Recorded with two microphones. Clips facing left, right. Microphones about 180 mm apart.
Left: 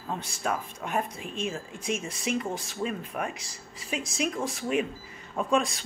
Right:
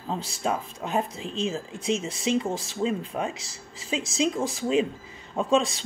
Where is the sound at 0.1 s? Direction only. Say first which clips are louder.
Right 3 dB; 25° right (ahead or behind).